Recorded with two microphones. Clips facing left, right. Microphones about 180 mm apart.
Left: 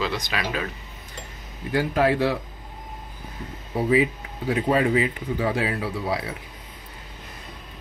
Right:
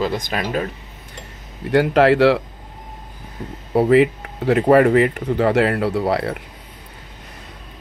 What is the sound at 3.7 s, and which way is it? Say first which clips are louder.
Speech: right 7 dB; 70° right (ahead or behind).